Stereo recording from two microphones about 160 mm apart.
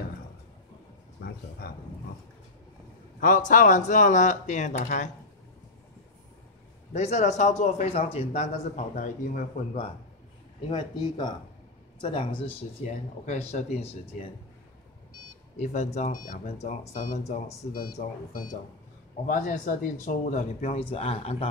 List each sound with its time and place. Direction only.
1.2 s a sound: 75° left (ahead or behind)
1.6 s speech: 70° left (ahead or behind)
3.2 s speech: 60° left (ahead or behind)
6.9 s speech: 45° left (ahead or behind)
10.7 s speech: 25° left (ahead or behind)
12.8 s speech: 50° left (ahead or behind)
15.5 s speech: 50° left (ahead or behind)